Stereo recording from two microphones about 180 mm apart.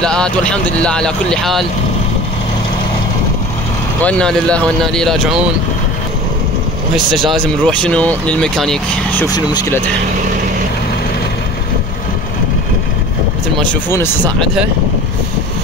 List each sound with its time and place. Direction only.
0.0 s speech: 5° left (ahead or behind)
4.0 s speech: 5° left (ahead or behind)
7.6 s speech: 5° left (ahead or behind)
9.3 s speech: 20° left (ahead or behind)
13.6 s speech: 10° left (ahead or behind)